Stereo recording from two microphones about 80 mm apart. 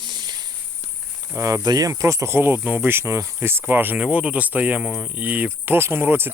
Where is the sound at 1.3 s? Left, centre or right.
Right.